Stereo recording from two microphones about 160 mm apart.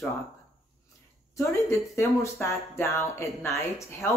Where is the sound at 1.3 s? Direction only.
20° left (ahead or behind).